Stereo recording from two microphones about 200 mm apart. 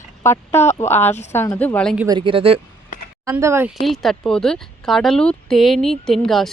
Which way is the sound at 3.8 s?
Centre (ahead or behind).